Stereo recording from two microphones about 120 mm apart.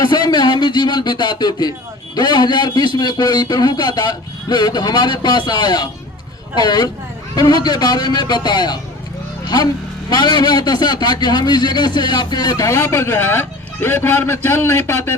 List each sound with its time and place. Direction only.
0.0 s a sound: 35° left (ahead or behind)
2.1 s a man's voice: 35° left (ahead or behind)
10.1 s a man's voice: 35° left (ahead or behind); by 15.1 s 20° left (ahead or behind)